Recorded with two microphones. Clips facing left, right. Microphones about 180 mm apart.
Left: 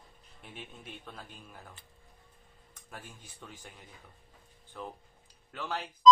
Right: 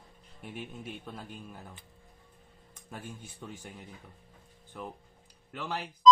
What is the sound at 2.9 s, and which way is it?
Speech, 20° right (ahead or behind).